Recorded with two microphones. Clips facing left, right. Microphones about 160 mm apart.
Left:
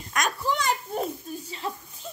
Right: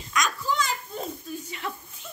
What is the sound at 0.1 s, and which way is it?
Children playing, 55° left (ahead or behind).